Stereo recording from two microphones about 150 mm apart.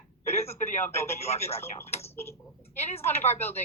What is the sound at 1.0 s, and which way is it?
Speech, 45° left (ahead or behind).